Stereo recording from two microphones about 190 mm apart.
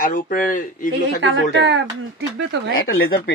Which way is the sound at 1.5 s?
70° right (ahead or behind).